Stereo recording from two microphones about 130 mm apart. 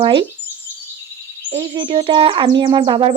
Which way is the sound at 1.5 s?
40° right (ahead or behind).